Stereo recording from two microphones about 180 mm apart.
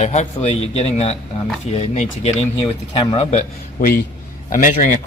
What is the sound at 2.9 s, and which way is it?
Speech, 30° left (ahead or behind).